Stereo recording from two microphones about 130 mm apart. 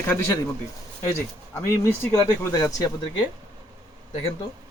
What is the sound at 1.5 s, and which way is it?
Speech, 20° left (ahead or behind).